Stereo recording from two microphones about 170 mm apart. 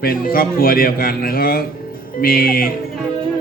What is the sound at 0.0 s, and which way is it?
A man's voice, 60° left (ahead or behind).